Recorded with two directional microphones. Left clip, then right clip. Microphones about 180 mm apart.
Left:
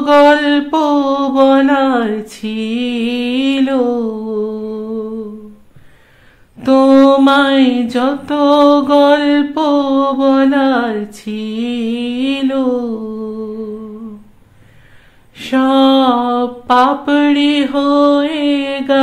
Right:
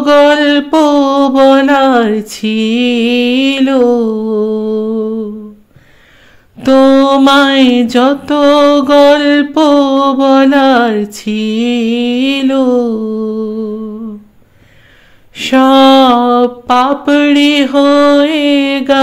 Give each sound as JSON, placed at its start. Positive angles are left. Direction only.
{"t": 0.0, "sound": "mantra", "side_deg": -30}
{"t": 6.6, "sound": "mantra", "side_deg": -35}
{"t": 15.3, "sound": "mantra", "side_deg": -40}